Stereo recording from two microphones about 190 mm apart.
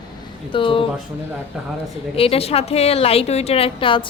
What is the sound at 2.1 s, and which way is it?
Speech, 30° left (ahead or behind).